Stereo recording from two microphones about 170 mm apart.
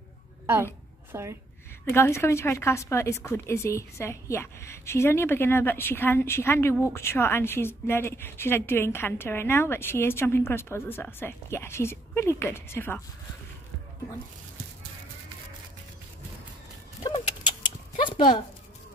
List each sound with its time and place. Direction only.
1.1 s a woman's voice: 15° right (ahead or behind)
1.9 s a woman's voice: 15° left (ahead or behind)
18.0 s a sound: 30° left (ahead or behind)